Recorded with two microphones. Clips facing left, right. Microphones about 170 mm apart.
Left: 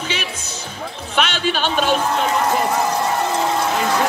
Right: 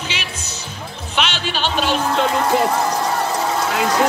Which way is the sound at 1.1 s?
50° left (ahead or behind).